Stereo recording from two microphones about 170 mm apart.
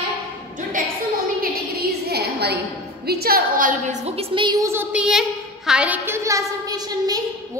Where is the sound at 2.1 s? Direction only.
75° right (ahead or behind).